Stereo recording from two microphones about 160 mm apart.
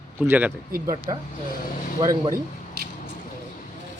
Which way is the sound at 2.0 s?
30° right (ahead or behind).